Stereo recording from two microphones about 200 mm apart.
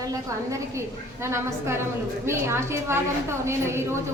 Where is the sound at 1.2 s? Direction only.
15° right (ahead or behind).